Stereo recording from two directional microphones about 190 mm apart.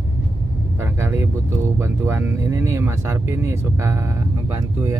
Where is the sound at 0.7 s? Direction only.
15° right (ahead or behind).